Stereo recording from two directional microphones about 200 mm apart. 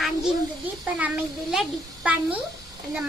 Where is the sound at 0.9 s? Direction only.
5° right (ahead or behind).